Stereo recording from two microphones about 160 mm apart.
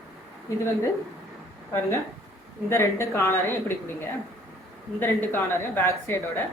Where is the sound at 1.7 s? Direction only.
20° left (ahead or behind).